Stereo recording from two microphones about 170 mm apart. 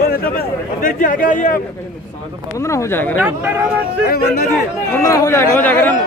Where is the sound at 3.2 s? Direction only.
10° right (ahead or behind).